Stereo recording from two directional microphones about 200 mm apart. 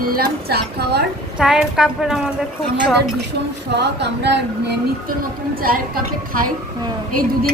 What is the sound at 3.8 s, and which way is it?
Speech, 60° right (ahead or behind).